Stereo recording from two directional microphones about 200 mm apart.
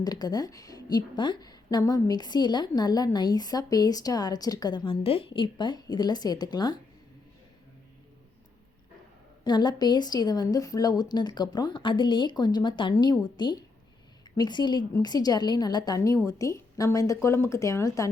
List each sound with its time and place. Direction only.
0.0 s a woman's voice: 20° left (ahead or behind)
9.4 s a woman's voice: 20° left (ahead or behind)